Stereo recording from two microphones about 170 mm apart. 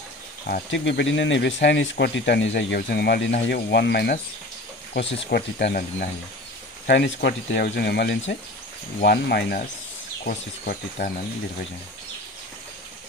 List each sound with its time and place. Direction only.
0.5 s speech: 90° left; by 3.3 s 75° left (ahead or behind)
3.4 s speech: 85° left
5.3 s speech: 65° left (ahead or behind)
6.9 s speech: 90° left; by 11.1 s 55° left (ahead or behind)